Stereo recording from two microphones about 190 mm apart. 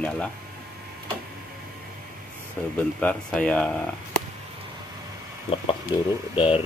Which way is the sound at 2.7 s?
5° left (ahead or behind).